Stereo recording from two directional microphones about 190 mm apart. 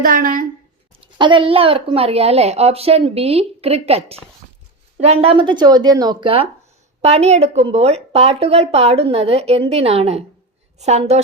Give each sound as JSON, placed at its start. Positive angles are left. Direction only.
{"t": 0.0, "sound": "a woman's voice", "side_deg": -45}
{"t": 1.2, "sound": "speech", "side_deg": -25}